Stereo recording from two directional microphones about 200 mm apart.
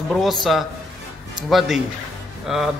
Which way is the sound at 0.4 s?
Centre (ahead or behind).